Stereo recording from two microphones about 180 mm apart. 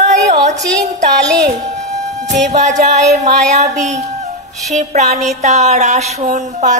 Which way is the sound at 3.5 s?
40° right (ahead or behind).